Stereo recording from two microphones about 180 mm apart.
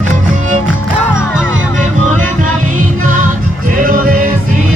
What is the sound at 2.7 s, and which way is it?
Music, 50° right (ahead or behind).